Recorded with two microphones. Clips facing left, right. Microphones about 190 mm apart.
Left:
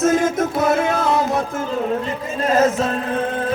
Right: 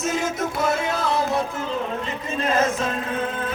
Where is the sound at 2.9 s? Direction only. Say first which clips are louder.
Left 5 dB; 35° left (ahead or behind).